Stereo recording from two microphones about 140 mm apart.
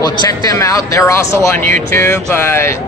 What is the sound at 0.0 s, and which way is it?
Speech, 30° left (ahead or behind).